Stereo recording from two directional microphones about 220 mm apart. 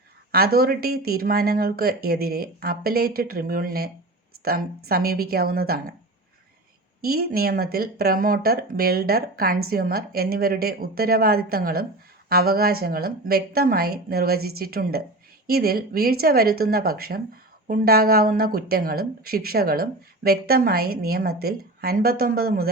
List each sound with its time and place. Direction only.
0.3 s speech: 45° right (ahead or behind)
7.0 s speech: 45° right (ahead or behind)